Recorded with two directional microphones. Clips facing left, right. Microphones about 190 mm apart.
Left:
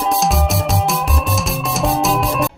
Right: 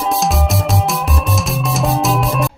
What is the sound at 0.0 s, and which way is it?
Music, centre (ahead or behind).